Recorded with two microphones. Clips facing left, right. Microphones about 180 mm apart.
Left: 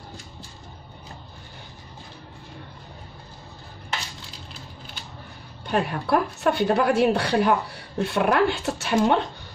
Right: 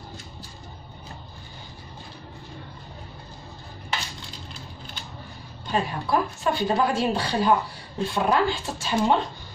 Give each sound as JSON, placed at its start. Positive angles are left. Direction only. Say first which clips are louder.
{"t": 5.7, "sound": "a woman's voice", "louder": "left 2 dB", "side_deg": 65}